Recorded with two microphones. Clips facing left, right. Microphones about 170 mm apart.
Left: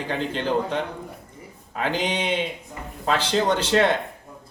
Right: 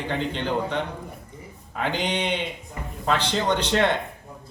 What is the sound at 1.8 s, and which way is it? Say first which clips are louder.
A man's voice: left 1 dB; 5° left (ahead or behind).